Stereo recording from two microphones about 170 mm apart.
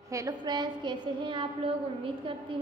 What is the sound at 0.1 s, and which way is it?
A woman's voice, 20° right (ahead or behind).